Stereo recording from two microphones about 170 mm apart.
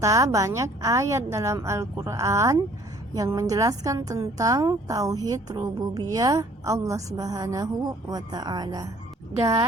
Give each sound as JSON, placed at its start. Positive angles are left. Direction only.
{"t": 0.0, "sound": "a woman's voice", "side_deg": -20}